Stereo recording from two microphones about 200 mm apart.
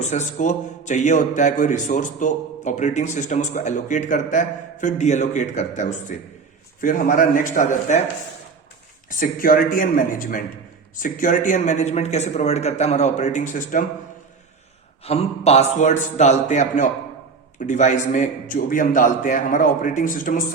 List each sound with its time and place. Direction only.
0.0 s a man's voice: 35° left (ahead or behind)
9.0 s a man's voice: 45° left (ahead or behind)
15.0 s a man's voice: 30° left (ahead or behind)